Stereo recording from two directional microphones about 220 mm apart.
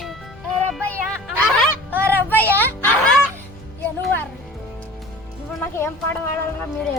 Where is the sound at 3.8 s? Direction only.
5° left (ahead or behind).